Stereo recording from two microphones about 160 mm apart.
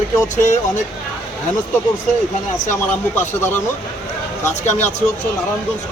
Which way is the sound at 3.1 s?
15° left (ahead or behind).